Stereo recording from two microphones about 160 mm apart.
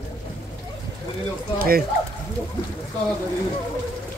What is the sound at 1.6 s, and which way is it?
Speech, 65° right (ahead or behind).